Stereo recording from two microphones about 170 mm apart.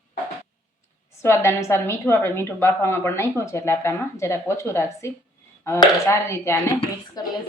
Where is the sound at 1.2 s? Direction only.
15° left (ahead or behind).